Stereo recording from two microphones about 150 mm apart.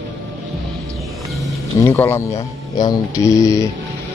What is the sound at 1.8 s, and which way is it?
Speech, 20° left (ahead or behind).